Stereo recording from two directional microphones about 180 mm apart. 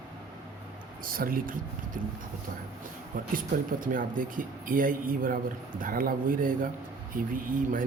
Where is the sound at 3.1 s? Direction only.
50° right (ahead or behind).